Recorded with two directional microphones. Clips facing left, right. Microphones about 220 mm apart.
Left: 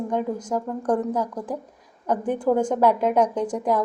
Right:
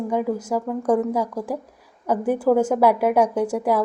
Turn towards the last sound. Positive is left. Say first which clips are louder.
# right 2 dB
turn(degrees=-10)  # may be behind; listen again after turning